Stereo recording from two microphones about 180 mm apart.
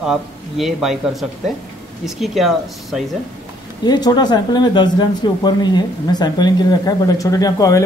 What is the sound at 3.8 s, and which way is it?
Speech, 20° left (ahead or behind).